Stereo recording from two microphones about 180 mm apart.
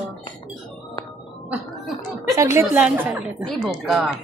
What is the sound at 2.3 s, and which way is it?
A woman's voice, 15° right (ahead or behind).